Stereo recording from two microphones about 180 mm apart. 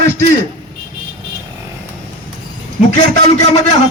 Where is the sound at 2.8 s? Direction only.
40° left (ahead or behind).